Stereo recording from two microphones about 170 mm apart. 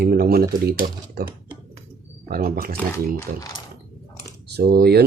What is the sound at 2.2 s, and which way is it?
Speech, 60° right (ahead or behind).